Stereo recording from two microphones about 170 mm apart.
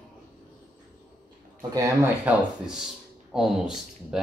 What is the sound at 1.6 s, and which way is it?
Speech, 20° right (ahead or behind).